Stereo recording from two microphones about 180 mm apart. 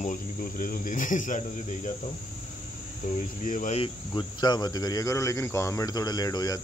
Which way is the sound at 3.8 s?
25° left (ahead or behind).